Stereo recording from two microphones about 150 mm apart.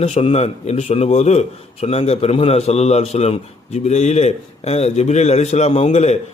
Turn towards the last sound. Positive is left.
turn(degrees=45)  # may be behind; listen again after turning